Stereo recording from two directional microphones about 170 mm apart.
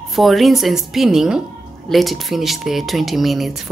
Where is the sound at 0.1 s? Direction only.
Centre (ahead or behind).